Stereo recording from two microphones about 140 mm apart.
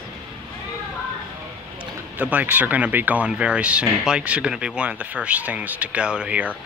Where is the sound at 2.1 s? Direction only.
10° right (ahead or behind).